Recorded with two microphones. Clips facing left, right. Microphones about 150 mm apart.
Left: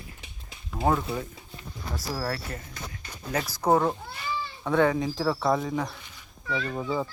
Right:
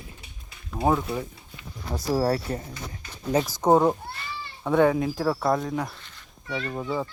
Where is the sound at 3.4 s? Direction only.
15° right (ahead or behind); by 7.0 s centre (ahead or behind).